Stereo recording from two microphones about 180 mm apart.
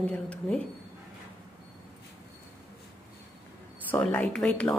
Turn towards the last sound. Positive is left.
turn(degrees=5)  # may be behind; listen again after turning